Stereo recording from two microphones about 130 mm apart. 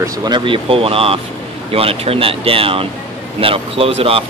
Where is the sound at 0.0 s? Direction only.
30° right (ahead or behind).